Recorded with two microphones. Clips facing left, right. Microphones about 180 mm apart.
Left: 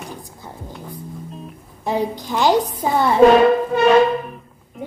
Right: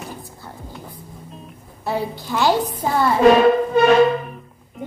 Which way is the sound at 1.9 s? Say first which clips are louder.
Left 2 dB; 15° left (ahead or behind).